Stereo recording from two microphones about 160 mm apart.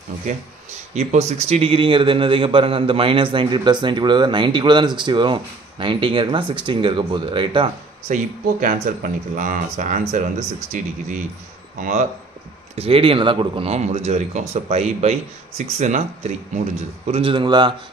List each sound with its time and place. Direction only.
0.9 s speech: 45° right (ahead or behind)
8.1 s speech: 50° right (ahead or behind)
12.7 s speech: 35° right (ahead or behind)